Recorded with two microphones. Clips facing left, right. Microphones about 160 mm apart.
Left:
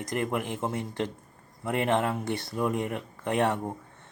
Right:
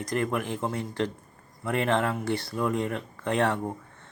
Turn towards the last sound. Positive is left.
turn(degrees=20)  # may be behind; listen again after turning